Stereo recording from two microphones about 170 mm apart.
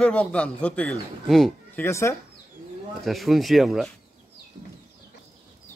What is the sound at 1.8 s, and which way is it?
Speech, 15° left (ahead or behind).